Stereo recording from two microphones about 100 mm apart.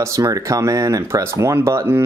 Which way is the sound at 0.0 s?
35° right (ahead or behind).